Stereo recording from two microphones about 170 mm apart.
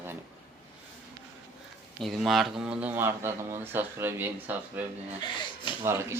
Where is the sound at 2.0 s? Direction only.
Centre (ahead or behind).